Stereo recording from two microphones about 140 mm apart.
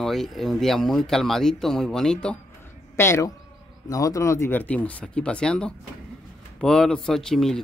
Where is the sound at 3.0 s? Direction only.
20° left (ahead or behind); by 7.6 s 5° left (ahead or behind).